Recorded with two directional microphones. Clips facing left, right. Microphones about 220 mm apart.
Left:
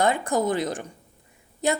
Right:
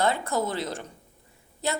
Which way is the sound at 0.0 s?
15° left (ahead or behind).